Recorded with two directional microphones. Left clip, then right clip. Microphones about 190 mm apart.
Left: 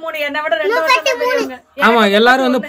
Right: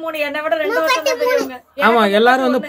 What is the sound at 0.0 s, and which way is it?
Speech, 10° left (ahead or behind).